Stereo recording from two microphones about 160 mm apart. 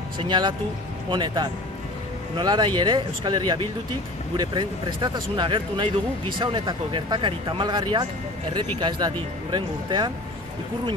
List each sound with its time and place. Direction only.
0.2 s speech: 30° right (ahead or behind)